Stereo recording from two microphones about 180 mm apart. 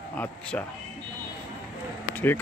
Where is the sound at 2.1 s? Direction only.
10° left (ahead or behind).